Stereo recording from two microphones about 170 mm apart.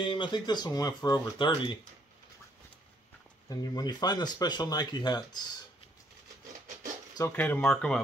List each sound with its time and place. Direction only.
0.0 s speech: 30° left (ahead or behind)
3.4 s speech: 25° left (ahead or behind)
7.2 s speech: 15° left (ahead or behind)